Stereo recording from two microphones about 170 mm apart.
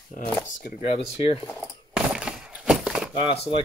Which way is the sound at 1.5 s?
5° right (ahead or behind).